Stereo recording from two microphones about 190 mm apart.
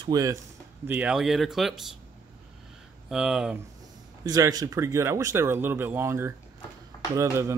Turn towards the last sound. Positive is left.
turn(degrees=-15)  # may be behind; listen again after turning